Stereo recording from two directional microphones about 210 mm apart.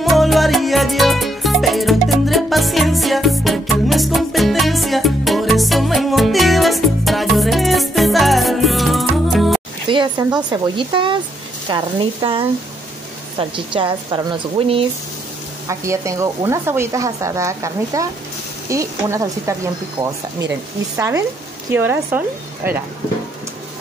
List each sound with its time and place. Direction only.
0.0 s music: centre (ahead or behind)
9.8 s a sound: 20° right (ahead or behind)
10.5 s a woman's voice: 20° right (ahead or behind)
15.7 s speech: 15° right (ahead or behind)
21.7 s speech: 10° right (ahead or behind)